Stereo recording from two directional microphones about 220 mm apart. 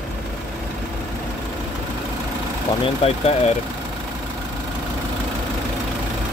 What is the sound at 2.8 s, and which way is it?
Speech, 25° left (ahead or behind).